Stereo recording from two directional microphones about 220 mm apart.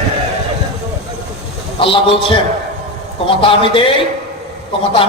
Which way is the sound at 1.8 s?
25° left (ahead or behind).